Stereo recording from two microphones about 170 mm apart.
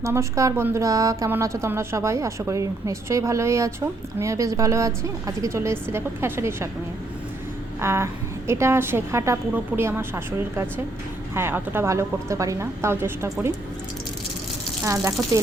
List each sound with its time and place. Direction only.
0.0 s a woman's voice: 15° right (ahead or behind)
7.8 s a woman's voice: 15° right (ahead or behind)
14.8 s speech: 20° right (ahead or behind)